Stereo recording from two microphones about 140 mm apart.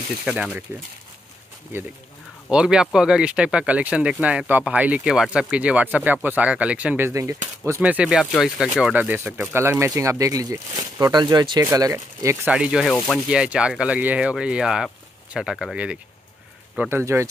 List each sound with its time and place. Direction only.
0.2 s speech: 5° right (ahead or behind)
2.5 s speech: 5° right (ahead or behind); by 7.8 s 20° right (ahead or behind)
7.8 s speech: 10° right (ahead or behind)
12.4 s speech: 5° right (ahead or behind)
16.9 s speech: 20° right (ahead or behind)